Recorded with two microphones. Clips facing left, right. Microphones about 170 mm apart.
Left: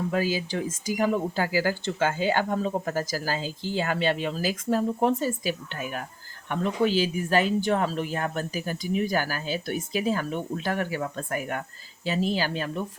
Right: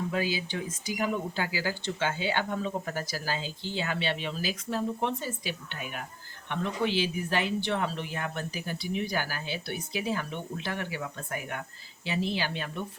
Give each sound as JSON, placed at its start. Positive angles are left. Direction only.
{"t": 0.1, "sound": "speech", "side_deg": 45}